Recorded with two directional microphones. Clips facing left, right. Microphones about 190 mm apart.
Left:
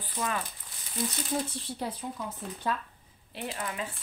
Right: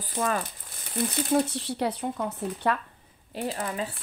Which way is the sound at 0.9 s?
70° right (ahead or behind).